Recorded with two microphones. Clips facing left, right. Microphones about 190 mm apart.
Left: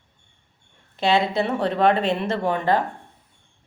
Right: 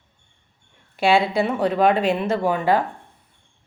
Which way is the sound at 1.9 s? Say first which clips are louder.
Right 2 dB; 25° left (ahead or behind).